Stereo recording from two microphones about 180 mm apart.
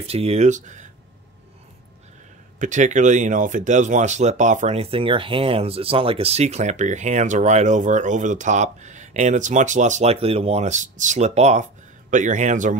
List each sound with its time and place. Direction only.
0.0 s speech: 35° right (ahead or behind)
2.6 s a man's voice: 45° right (ahead or behind)